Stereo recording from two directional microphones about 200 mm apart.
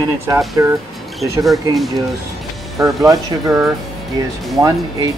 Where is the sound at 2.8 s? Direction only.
15° right (ahead or behind).